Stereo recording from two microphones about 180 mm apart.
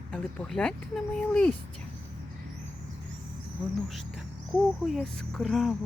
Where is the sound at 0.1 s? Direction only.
5° left (ahead or behind).